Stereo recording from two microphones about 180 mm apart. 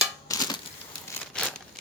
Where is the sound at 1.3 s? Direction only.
5° left (ahead or behind).